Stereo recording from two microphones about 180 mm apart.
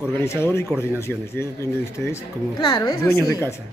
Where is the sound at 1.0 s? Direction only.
15° left (ahead or behind).